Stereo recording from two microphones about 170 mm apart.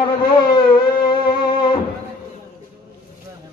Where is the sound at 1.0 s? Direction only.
30° left (ahead or behind).